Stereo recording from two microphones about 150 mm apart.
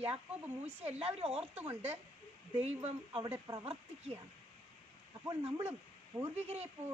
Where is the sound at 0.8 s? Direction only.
40° right (ahead or behind).